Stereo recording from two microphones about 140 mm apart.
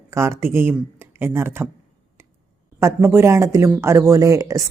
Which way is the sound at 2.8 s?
15° right (ahead or behind).